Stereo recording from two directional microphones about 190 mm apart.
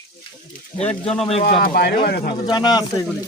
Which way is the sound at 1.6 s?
55° left (ahead or behind).